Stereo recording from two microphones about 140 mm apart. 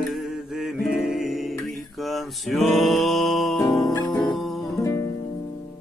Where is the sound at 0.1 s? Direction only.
Centre (ahead or behind).